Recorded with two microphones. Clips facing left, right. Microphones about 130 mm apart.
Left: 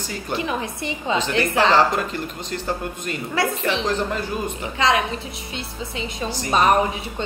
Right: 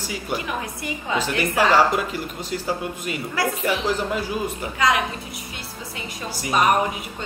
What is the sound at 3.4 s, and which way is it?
Speech, 25° left (ahead or behind).